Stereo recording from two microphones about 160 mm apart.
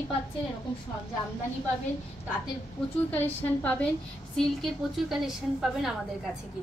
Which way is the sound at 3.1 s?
10° left (ahead or behind).